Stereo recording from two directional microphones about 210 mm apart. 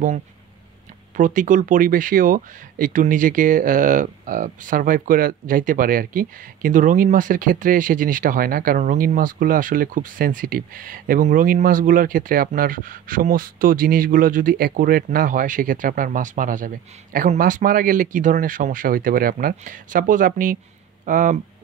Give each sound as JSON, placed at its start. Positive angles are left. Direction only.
{"t": 1.1, "sound": "speech", "side_deg": -40}